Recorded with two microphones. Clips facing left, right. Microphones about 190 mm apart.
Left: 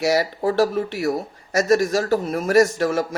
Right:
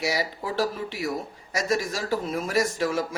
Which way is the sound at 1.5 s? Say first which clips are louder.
Left 9 dB; 45° left (ahead or behind).